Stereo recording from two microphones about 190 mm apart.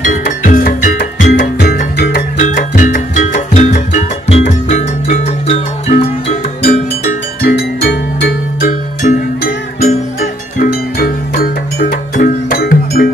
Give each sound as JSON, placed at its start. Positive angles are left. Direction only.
{"t": 0.0, "sound": "music", "side_deg": 45}
{"t": 2.4, "sound": "music", "side_deg": 45}
{"t": 7.4, "sound": "music", "side_deg": 55}
{"t": 9.0, "sound": "music", "side_deg": 40}